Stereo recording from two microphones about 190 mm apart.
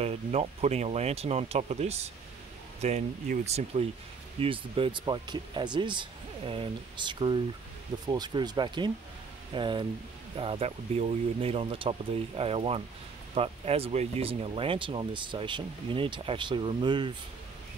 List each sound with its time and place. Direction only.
0.0 s speech: 35° right (ahead or behind)